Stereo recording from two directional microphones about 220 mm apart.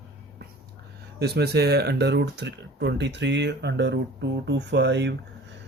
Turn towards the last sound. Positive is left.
turn(degrees=-50)  # may be behind; listen again after turning